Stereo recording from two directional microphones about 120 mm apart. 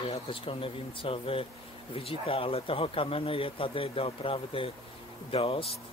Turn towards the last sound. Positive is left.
turn(degrees=50)  # may be behind; listen again after turning